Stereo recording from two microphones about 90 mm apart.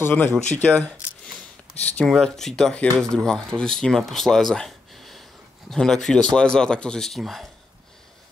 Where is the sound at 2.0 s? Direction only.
5° left (ahead or behind).